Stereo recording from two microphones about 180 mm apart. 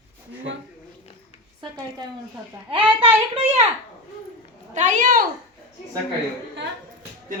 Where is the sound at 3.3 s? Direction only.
35° right (ahead or behind).